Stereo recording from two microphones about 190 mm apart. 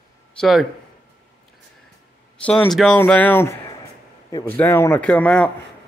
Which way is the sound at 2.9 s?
10° left (ahead or behind).